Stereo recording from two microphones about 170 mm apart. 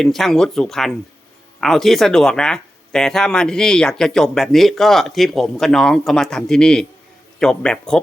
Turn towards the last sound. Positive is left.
turn(degrees=5)  # may be behind; listen again after turning